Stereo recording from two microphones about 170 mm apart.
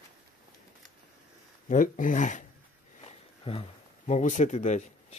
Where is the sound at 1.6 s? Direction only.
50° left (ahead or behind).